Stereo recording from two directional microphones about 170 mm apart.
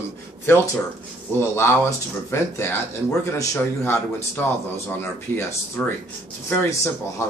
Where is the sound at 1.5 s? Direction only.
15° left (ahead or behind).